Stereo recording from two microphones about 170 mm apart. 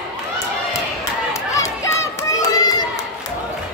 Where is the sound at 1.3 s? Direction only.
15° left (ahead or behind).